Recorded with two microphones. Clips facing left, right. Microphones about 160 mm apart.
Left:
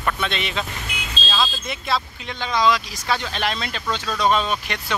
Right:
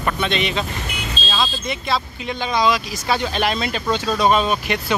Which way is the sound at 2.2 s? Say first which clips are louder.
Right 1 dB; 10° right (ahead or behind).